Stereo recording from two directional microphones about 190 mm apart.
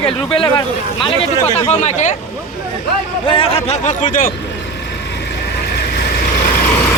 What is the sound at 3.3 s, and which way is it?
Speech, 30° left (ahead or behind).